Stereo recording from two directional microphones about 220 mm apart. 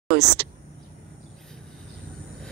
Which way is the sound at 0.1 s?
45° right (ahead or behind).